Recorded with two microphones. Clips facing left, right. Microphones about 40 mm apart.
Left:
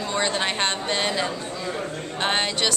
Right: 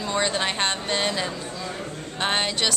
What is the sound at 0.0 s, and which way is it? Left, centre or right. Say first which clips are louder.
A woman's voice: even; centre.